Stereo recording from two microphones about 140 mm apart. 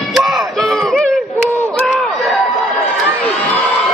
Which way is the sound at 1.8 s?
Centre (ahead or behind).